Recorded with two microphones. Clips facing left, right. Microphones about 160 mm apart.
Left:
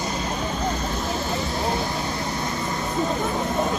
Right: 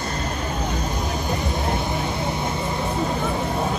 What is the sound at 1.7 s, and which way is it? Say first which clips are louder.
Vehicle: right 1 dB; 20° right (ahead or behind).